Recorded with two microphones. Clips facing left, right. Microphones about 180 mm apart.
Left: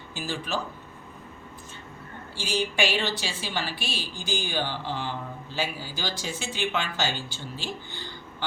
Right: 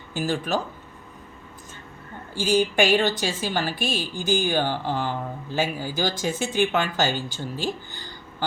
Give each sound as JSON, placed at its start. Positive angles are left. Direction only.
{"t": 0.1, "sound": "a woman's voice", "side_deg": -50}
{"t": 2.3, "sound": "a woman's voice", "side_deg": -45}